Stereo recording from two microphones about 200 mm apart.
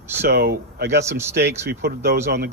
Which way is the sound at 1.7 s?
50° right (ahead or behind).